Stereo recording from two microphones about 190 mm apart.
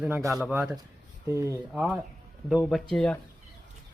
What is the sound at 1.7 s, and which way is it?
Speech, 5° right (ahead or behind).